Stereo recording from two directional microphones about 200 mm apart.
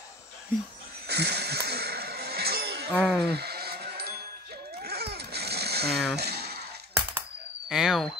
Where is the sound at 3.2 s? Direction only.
55° right (ahead or behind).